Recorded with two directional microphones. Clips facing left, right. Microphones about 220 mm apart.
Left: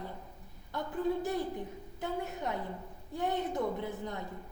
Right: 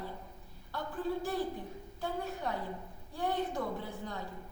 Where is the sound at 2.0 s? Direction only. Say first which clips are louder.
Left 1 dB; 20° left (ahead or behind).